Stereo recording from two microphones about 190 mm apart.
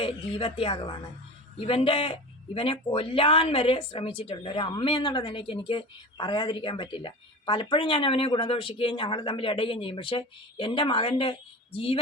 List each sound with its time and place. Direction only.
0.0 s a woman's voice: 30° left (ahead or behind)